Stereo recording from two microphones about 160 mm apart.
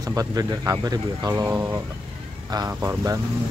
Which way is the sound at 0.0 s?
20° right (ahead or behind).